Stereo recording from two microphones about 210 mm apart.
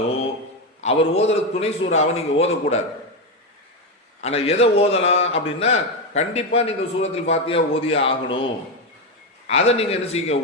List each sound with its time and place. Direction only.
0.8 s a man's voice: 30° left (ahead or behind)
4.2 s a man's voice: 30° left (ahead or behind)
9.5 s a man's voice: 30° left (ahead or behind)